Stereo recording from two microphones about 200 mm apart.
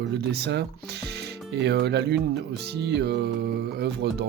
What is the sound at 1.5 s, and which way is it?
Speech, 55° right (ahead or behind).